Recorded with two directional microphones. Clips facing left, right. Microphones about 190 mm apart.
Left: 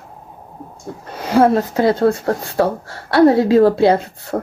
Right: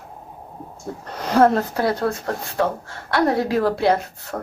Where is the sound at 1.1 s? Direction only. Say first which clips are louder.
Left 3 dB; 5° left (ahead or behind).